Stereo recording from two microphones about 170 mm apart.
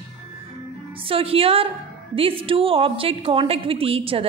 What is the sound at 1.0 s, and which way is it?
A woman's voice, 35° right (ahead or behind).